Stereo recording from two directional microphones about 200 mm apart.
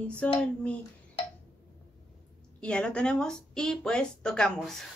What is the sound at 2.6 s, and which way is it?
A woman's voice, 5° left (ahead or behind).